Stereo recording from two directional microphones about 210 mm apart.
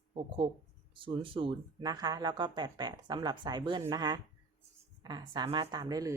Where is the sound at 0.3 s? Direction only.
25° right (ahead or behind).